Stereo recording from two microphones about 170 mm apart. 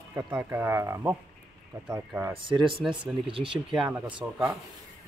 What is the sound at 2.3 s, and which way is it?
Speech, 30° right (ahead or behind).